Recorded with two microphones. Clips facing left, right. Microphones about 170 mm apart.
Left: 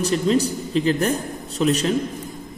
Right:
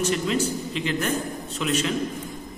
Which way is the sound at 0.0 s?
35° left (ahead or behind).